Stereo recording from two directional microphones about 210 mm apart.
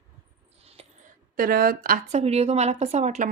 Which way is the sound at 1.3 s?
45° right (ahead or behind).